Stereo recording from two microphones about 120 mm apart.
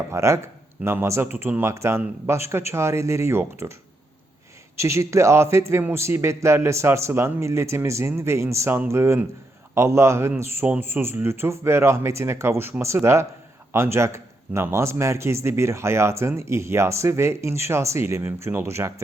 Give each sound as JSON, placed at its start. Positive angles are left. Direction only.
{"t": 0.1, "sound": "a man's voice", "side_deg": -25}
{"t": 4.8, "sound": "a man's voice", "side_deg": -25}